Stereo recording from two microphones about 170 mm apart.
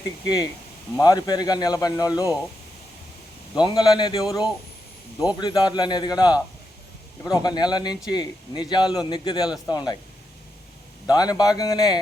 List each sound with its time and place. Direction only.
0.9 s speech: 20° left (ahead or behind)
3.5 s speech: 25° left (ahead or behind)
11.0 s speech: 25° left (ahead or behind)